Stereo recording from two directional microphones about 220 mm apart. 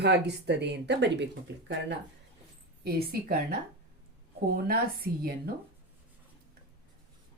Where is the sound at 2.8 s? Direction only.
45° right (ahead or behind).